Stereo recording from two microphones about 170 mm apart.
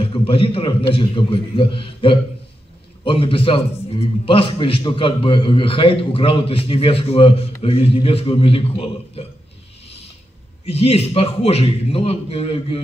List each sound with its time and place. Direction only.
0.0 s a man's voice: 30° left (ahead or behind)
10.6 s a man's voice: 35° left (ahead or behind)